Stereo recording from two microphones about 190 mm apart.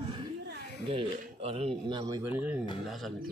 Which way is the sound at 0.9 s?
30° right (ahead or behind).